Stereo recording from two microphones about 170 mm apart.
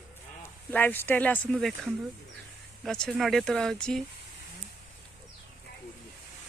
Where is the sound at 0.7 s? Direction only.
10° left (ahead or behind).